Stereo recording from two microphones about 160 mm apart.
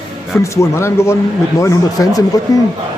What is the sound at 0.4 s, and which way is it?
Speech, 20° left (ahead or behind).